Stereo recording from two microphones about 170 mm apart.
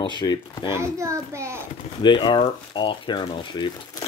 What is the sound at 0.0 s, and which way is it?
Speech, 25° left (ahead or behind).